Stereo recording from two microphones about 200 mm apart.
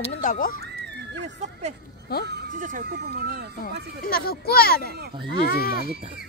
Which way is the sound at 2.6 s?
45° right (ahead or behind).